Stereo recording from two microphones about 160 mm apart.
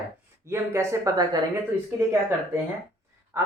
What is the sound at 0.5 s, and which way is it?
Speech, 15° right (ahead or behind).